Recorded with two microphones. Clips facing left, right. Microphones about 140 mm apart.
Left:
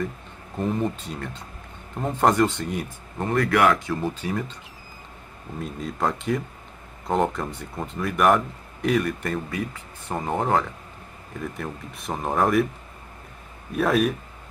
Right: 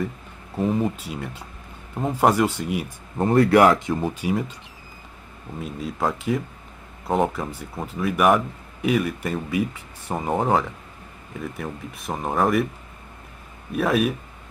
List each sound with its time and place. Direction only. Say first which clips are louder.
0.6 s speech: right 3 dB; 5° right (ahead or behind)
3.2 s speech: right 5 dB; 30° right (ahead or behind)
4.0 s speech: right 3 dB; 10° right (ahead or behind)
5.6 s speech: right 1 dB; 5° right (ahead or behind)
13.7 s speech: even; centre (ahead or behind)